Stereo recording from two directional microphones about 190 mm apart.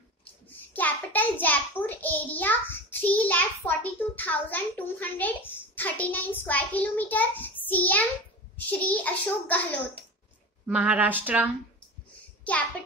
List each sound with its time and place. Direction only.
0.2 s a child's voice: 10° left (ahead or behind)
10.7 s speech: 5° right (ahead or behind)